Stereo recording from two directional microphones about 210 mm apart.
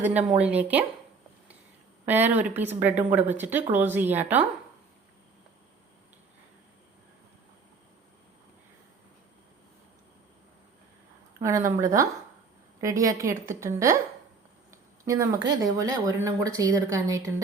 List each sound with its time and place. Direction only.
0.3 s speech: 5° right (ahead or behind)
2.0 s speech: 10° right (ahead or behind)
11.3 s speech: 15° right (ahead or behind)
15.0 s speech: 15° right (ahead or behind)